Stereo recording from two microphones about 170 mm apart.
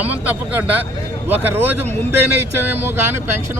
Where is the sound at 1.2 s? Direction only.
10° right (ahead or behind).